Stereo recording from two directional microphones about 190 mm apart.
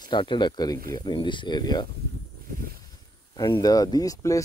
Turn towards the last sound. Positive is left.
turn(degrees=15)  # may be behind; listen again after turning